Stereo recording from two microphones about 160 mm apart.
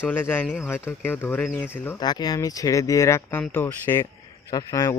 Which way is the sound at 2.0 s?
25° left (ahead or behind).